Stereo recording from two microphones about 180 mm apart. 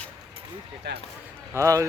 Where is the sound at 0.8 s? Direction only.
70° right (ahead or behind).